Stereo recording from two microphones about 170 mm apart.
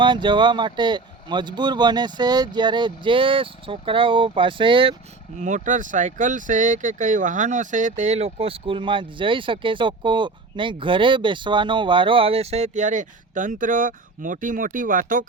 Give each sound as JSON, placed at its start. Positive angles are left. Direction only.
{"t": 0.0, "sound": "speech", "side_deg": -30}
{"t": 5.4, "sound": "speech", "side_deg": -45}